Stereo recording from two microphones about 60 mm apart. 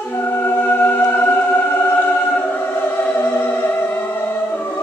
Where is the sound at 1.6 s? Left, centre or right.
Left.